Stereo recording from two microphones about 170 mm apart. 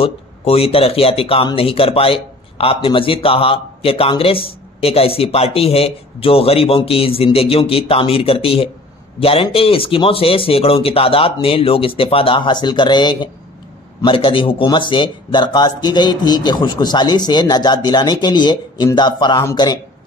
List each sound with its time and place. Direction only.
0.0 s a man's voice: 35° left (ahead or behind)